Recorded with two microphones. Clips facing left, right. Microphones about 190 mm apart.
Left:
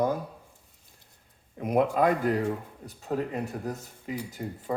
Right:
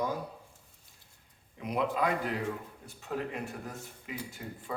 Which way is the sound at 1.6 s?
50° left (ahead or behind).